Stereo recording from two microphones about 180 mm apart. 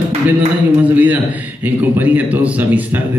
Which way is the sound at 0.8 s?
10° right (ahead or behind).